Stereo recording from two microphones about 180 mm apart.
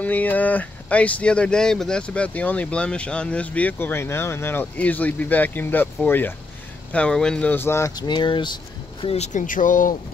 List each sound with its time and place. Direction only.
0.0 s speech: 10° left (ahead or behind); by 8.5 s 25° left (ahead or behind)
9.0 s speech: 35° left (ahead or behind)